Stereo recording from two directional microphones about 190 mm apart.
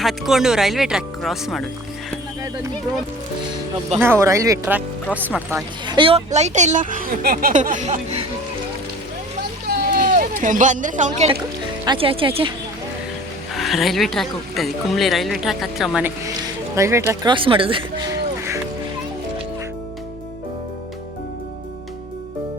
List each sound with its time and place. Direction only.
0.0 s speech: centre (ahead or behind)
4.0 s speech: 15° right (ahead or behind)
5.8 s speech: 25° right (ahead or behind)
9.6 s a sound: 50° right (ahead or behind)
11.9 s speech: 30° right (ahead or behind)
13.6 s speech: centre (ahead or behind)
16.7 s speech: 15° right (ahead or behind)
17.3 s music: 30° right (ahead or behind)